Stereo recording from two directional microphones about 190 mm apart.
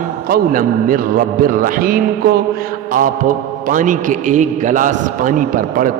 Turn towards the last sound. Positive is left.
turn(degrees=-45)  # may be behind; listen again after turning